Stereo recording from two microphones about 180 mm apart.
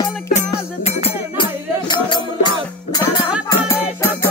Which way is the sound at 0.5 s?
30° left (ahead or behind).